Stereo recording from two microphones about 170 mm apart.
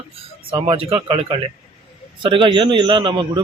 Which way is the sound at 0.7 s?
35° right (ahead or behind).